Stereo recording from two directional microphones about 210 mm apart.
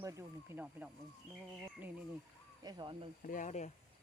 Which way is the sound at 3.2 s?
40° left (ahead or behind).